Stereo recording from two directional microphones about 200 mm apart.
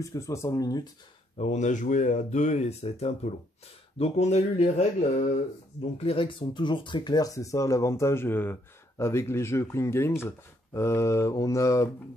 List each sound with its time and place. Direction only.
0.0 s speech: 15° left (ahead or behind)
1.4 s speech: 35° left (ahead or behind); by 11.9 s 15° left (ahead or behind)